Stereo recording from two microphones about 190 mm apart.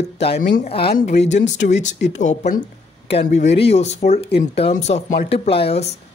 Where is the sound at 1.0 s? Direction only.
35° left (ahead or behind).